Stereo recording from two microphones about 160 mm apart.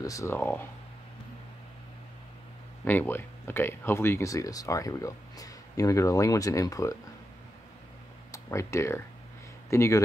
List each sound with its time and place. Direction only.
0.0 s speech: 20° left (ahead or behind)
2.8 s speech: 10° left (ahead or behind)
8.3 s speech: 20° left (ahead or behind)